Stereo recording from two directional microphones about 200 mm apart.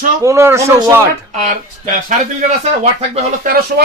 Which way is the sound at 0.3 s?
15° right (ahead or behind).